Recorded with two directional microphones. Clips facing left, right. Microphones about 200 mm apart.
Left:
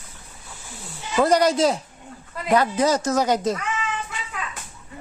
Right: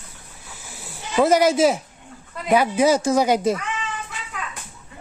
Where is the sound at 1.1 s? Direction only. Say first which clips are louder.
Right 2 dB; 5° right (ahead or behind).